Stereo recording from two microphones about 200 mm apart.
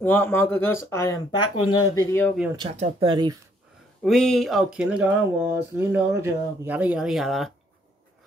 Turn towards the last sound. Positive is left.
turn(degrees=0)  # may be behind; listen again after turning